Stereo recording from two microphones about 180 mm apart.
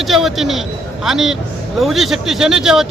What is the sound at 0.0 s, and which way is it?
Speech, centre (ahead or behind).